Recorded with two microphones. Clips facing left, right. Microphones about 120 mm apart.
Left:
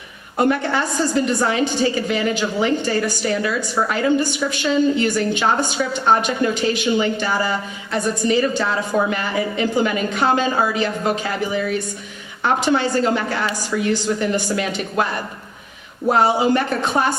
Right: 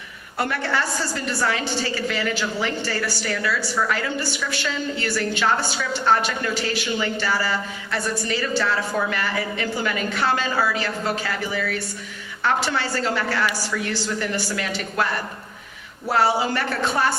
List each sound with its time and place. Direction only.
0.3 s a woman's voice: 20° left (ahead or behind)